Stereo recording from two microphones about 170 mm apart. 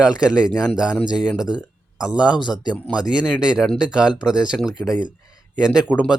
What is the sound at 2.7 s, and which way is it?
Speech, 10° left (ahead or behind).